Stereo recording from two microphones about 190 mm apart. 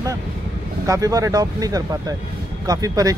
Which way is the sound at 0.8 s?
15° right (ahead or behind).